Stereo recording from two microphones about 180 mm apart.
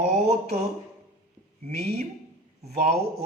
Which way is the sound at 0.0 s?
35° right (ahead or behind).